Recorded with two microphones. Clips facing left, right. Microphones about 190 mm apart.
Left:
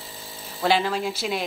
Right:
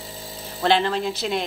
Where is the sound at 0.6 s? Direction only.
5° left (ahead or behind).